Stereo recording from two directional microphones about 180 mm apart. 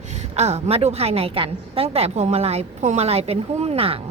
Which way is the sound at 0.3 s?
35° right (ahead or behind).